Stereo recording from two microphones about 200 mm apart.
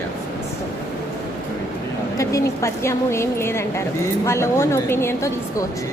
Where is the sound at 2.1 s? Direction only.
15° left (ahead or behind).